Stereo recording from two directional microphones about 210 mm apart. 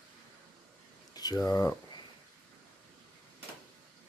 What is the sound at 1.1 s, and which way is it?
Speech, 15° left (ahead or behind).